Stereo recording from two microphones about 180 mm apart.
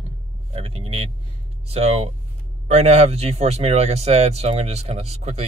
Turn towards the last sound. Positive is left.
turn(degrees=-35)  # may be behind; listen again after turning